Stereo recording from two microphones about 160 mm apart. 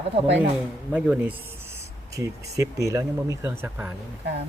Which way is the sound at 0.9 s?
10° right (ahead or behind).